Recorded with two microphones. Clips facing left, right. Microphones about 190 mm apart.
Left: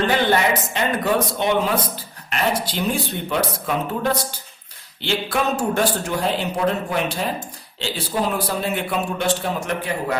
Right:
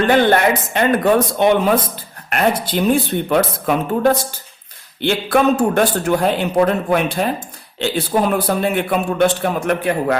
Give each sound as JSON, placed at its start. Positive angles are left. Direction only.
{"t": 0.1, "sound": "speech", "side_deg": -55}